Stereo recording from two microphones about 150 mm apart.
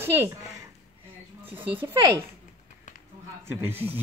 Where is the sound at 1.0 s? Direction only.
35° right (ahead or behind).